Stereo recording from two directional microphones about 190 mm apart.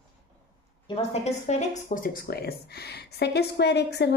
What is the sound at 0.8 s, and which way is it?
Speech, 35° left (ahead or behind).